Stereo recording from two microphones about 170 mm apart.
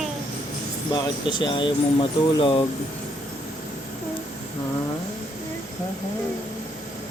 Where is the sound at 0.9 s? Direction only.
25° left (ahead or behind).